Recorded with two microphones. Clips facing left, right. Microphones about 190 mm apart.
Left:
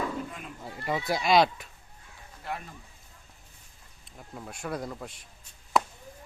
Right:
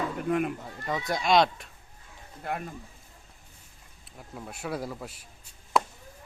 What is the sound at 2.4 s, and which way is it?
Speech, 50° right (ahead or behind).